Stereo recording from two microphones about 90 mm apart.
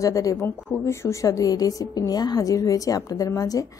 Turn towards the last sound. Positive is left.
turn(degrees=40)  # may be behind; listen again after turning